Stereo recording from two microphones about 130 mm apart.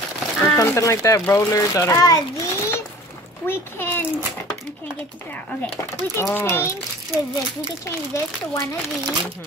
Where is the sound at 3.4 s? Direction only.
15° left (ahead or behind).